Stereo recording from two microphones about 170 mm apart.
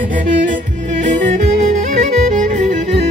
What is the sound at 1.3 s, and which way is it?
Music, 45° right (ahead or behind).